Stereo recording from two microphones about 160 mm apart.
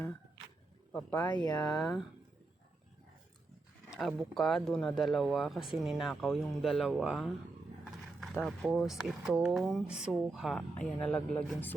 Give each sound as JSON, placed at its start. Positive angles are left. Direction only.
{"t": 0.9, "sound": "speech", "side_deg": 10}
{"t": 1.5, "sound": "speech", "side_deg": 25}
{"t": 3.8, "sound": "speech", "side_deg": 0}